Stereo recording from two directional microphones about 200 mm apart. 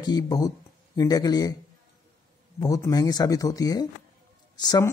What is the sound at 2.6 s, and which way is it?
Speech, 20° left (ahead or behind).